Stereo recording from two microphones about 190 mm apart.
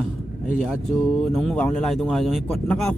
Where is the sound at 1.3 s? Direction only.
5° left (ahead or behind).